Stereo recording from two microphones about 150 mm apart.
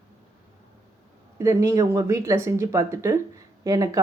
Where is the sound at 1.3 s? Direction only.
20° right (ahead or behind).